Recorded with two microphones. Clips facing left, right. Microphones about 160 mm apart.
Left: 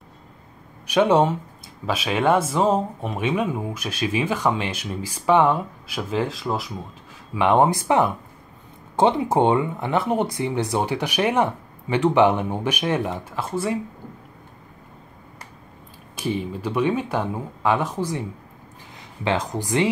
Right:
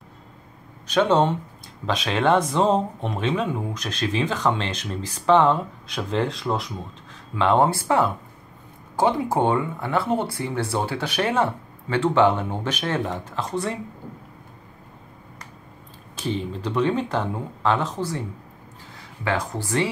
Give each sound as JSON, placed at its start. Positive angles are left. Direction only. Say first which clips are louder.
{"t": 0.8, "sound": "speech", "louder": "left 2 dB", "side_deg": 10}
{"t": 7.3, "sound": "speech", "louder": "left 1 dB", "side_deg": 15}
{"t": 16.2, "sound": "speech", "louder": "left 1 dB", "side_deg": 10}